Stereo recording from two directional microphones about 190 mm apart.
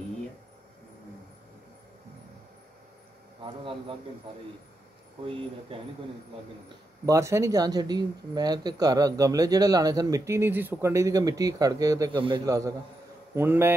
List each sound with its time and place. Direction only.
5.7 s speech: 25° right (ahead or behind)
7.1 s a man's voice: 15° right (ahead or behind)